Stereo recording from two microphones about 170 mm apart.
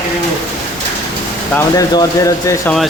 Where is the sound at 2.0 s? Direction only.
20° left (ahead or behind).